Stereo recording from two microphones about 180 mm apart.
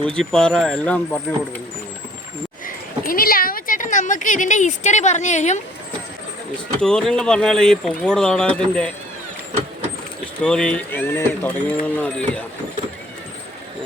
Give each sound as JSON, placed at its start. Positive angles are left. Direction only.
{"t": 0.0, "sound": "speech", "side_deg": 5}
{"t": 2.6, "sound": "speech", "side_deg": 50}
{"t": 6.8, "sound": "speech", "side_deg": 5}
{"t": 10.4, "sound": "speech", "side_deg": 5}